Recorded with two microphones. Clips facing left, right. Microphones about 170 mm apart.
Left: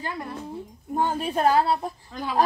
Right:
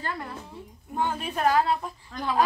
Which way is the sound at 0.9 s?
40° left (ahead or behind).